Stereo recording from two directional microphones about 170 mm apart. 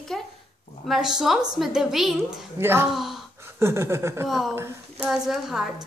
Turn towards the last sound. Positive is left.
turn(degrees=0)  # may be behind; listen again after turning